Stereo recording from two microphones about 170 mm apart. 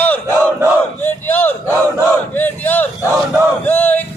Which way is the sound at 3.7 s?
10° left (ahead or behind).